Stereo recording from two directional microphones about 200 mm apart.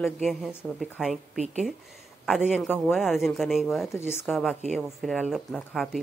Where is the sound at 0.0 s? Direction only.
Centre (ahead or behind).